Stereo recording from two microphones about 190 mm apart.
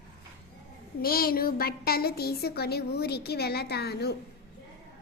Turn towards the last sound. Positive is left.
turn(degrees=60)  # may be behind; listen again after turning